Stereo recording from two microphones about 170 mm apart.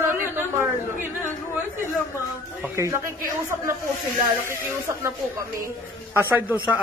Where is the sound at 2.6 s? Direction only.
15° right (ahead or behind).